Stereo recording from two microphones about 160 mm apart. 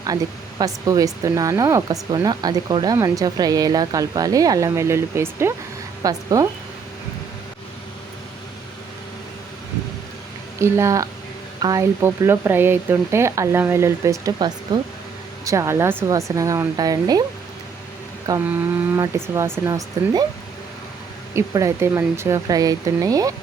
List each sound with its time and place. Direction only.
0.6 s speech: 20° right (ahead or behind)
10.6 s speech: 20° right (ahead or behind)
18.4 s speech: 10° right (ahead or behind)
21.3 s speech: 20° right (ahead or behind)